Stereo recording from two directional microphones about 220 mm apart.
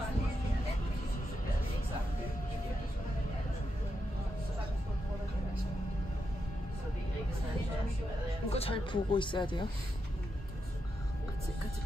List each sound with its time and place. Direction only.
8.5 s speech: 25° left (ahead or behind)